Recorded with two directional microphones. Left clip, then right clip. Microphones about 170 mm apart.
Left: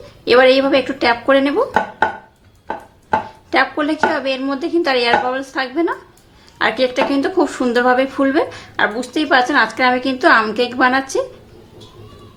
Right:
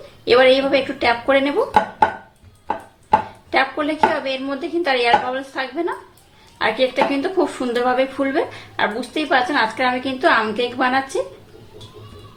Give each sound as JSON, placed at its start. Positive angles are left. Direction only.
{"t": 0.3, "sound": "speech", "side_deg": 20}
{"t": 3.5, "sound": "speech", "side_deg": 25}